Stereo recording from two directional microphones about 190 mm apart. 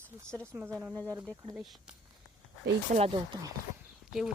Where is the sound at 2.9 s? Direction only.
30° right (ahead or behind).